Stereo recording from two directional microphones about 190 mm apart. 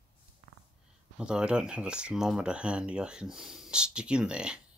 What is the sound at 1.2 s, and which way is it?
Speech, 5° right (ahead or behind).